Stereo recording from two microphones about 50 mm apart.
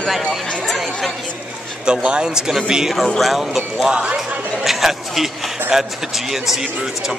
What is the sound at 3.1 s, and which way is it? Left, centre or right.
Speech, centre.